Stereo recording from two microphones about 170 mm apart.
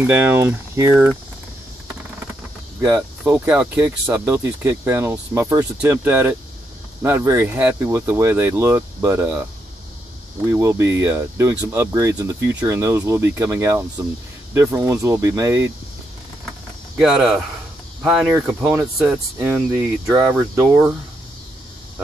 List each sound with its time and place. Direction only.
0.0 s speech: 10° right (ahead or behind)
3.3 s speech: 5° right (ahead or behind)
10.5 s speech: 15° right (ahead or behind)
17.0 s speech: 5° right (ahead or behind)